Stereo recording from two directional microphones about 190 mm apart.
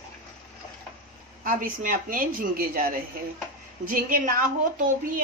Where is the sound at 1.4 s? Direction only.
45° right (ahead or behind).